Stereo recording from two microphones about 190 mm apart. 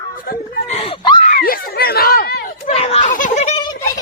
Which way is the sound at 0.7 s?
30° left (ahead or behind).